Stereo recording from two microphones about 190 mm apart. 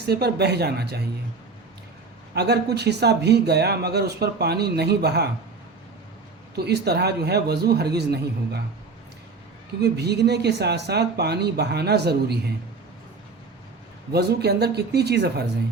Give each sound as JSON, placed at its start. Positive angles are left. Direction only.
{"t": 0.0, "sound": "speech", "side_deg": -60}
{"t": 2.3, "sound": "speech", "side_deg": -60}
{"t": 6.6, "sound": "speech", "side_deg": -60}
{"t": 9.8, "sound": "speech", "side_deg": -60}
{"t": 14.1, "sound": "speech", "side_deg": -60}